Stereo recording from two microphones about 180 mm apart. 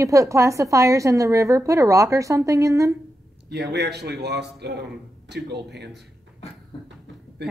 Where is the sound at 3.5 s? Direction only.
70° right (ahead or behind).